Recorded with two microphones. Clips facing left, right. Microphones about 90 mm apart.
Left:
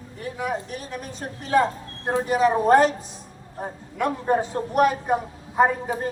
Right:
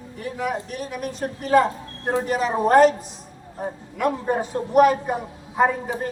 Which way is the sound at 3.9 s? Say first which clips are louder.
Left 1 dB; 5° right (ahead or behind).